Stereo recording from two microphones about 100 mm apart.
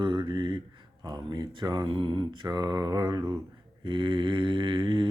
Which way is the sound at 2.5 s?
40° right (ahead or behind).